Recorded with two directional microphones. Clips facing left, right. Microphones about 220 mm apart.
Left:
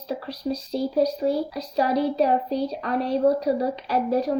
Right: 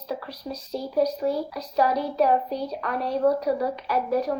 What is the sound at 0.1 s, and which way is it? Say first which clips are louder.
A woman's voice: left 5 dB; 30° left (ahead or behind).